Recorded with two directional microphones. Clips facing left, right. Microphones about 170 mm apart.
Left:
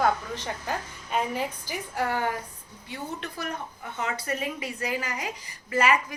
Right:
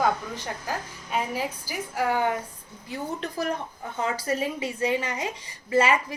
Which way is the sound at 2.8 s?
35° right (ahead or behind).